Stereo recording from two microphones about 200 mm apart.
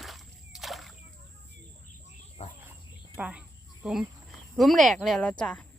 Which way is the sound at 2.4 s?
30° left (ahead or behind).